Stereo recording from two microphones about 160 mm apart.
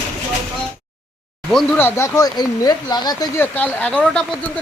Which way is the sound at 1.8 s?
15° left (ahead or behind).